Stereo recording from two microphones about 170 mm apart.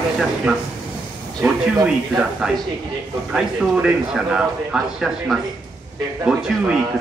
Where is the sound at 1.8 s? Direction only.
5° right (ahead or behind).